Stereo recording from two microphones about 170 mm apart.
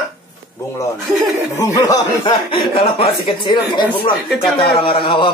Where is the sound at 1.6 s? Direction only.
20° left (ahead or behind).